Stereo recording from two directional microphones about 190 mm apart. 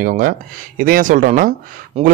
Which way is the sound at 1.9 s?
30° right (ahead or behind).